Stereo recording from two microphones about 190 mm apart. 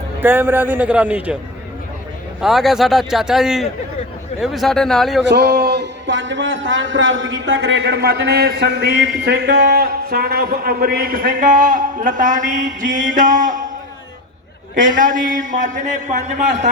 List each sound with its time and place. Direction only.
0.2 s a man's voice: 10° right (ahead or behind)
2.4 s a man's voice: centre (ahead or behind)
5.3 s a man's voice: 60° right (ahead or behind); by 13.7 s 45° right (ahead or behind)
14.8 s a man's voice: 45° right (ahead or behind)